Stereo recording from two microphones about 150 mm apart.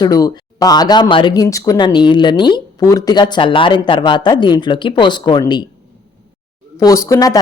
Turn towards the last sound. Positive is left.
turn(degrees=20)  # may be behind; listen again after turning